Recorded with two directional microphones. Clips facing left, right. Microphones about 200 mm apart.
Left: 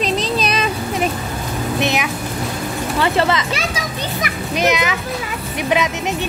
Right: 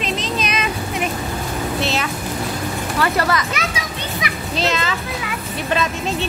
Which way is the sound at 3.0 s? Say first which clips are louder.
Left 2 dB; 25° left (ahead or behind).